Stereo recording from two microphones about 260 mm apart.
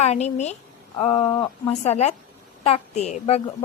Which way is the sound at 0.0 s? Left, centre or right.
Left.